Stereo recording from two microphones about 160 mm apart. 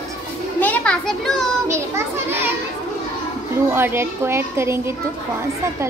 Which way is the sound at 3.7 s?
15° right (ahead or behind).